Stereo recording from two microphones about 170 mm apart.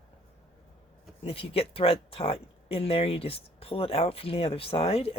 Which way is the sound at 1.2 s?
35° left (ahead or behind).